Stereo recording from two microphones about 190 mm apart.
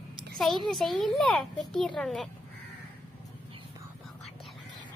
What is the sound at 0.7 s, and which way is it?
A woman's voice, centre (ahead or behind).